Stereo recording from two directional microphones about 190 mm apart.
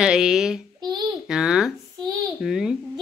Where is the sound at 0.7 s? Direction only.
20° right (ahead or behind).